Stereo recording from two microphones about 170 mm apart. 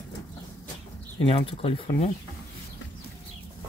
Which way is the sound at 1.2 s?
35° left (ahead or behind).